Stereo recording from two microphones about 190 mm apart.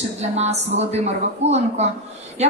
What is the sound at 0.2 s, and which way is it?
A woman's voice, 35° right (ahead or behind).